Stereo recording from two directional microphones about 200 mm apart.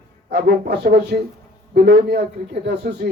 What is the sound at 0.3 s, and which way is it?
Speech, 50° right (ahead or behind).